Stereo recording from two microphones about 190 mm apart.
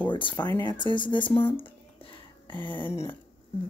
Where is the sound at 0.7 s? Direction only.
25° right (ahead or behind).